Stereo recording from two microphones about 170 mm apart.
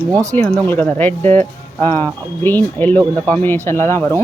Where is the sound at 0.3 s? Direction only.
10° left (ahead or behind).